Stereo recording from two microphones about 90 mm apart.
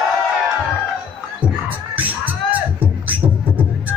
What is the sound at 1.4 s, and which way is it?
Music, 20° right (ahead or behind).